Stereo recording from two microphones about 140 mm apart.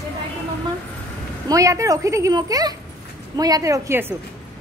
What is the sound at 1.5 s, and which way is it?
A child's voice, 25° right (ahead or behind).